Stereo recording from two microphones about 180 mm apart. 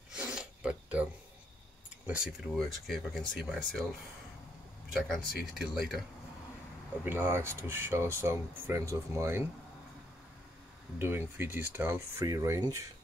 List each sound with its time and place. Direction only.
0.1 s a sound: 5° right (ahead or behind)
2.0 s speech: 5° right (ahead or behind)
4.9 s speech: centre (ahead or behind)
7.1 s speech: 10° right (ahead or behind)
11.0 s speech: 10° right (ahead or behind)